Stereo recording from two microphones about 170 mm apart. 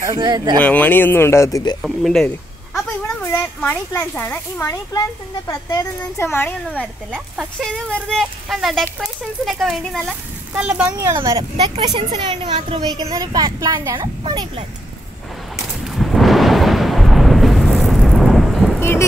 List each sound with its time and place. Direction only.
0.0 s speech: 25° right (ahead or behind)
0.6 s a child's voice: 10° left (ahead or behind)
1.8 s a sound: centre (ahead or behind)
3.3 s a child's voice: 15° left (ahead or behind); by 11.0 s 5° right (ahead or behind)
11.0 s speech: 20° right (ahead or behind)
13.0 s speech: 20° right (ahead or behind)
15.5 s thunder: centre (ahead or behind)
18.8 s thunder: 15° left (ahead or behind)